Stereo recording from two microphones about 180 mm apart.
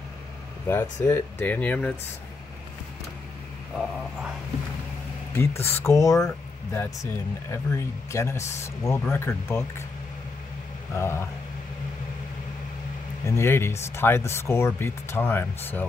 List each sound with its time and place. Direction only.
0.7 s speech: 10° left (ahead or behind)
5.3 s speech: 15° left (ahead or behind)
11.0 s speech: 15° left (ahead or behind)
13.2 s speech: 15° left (ahead or behind)